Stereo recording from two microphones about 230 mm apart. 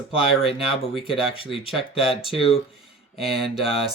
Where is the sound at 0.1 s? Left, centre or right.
Left.